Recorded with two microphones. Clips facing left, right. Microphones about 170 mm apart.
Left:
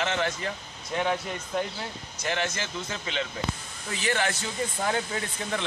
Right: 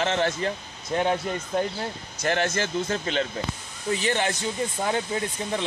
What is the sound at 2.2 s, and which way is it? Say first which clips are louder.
A man's voice: right 5 dB; 45° right (ahead or behind).